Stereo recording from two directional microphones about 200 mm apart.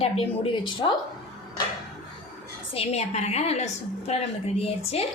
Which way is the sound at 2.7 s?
30° left (ahead or behind).